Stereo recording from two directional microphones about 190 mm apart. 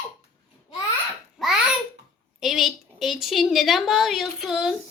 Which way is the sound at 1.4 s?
5° right (ahead or behind).